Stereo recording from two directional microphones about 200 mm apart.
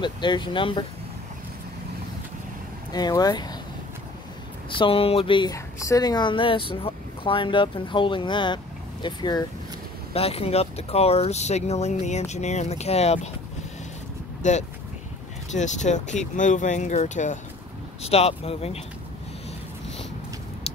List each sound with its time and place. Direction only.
0.0 s a woman's voice: 25° left (ahead or behind)
2.9 s a woman's voice: 20° left (ahead or behind)
4.6 s a woman's voice: 25° left (ahead or behind)
14.4 s speech: 35° left (ahead or behind)
20.7 s a sound: 30° left (ahead or behind)